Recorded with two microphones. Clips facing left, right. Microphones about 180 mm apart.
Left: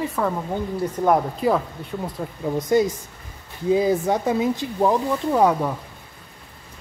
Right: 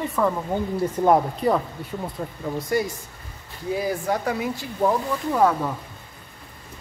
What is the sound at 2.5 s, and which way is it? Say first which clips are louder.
Speech: left 6 dB; 20° left (ahead or behind).